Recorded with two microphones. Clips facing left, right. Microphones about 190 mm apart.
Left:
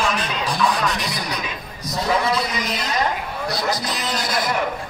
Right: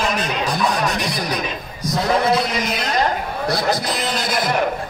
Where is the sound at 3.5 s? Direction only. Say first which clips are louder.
Right 4 dB; 55° right (ahead or behind).